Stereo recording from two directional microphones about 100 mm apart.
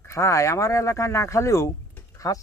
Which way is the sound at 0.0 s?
30° left (ahead or behind).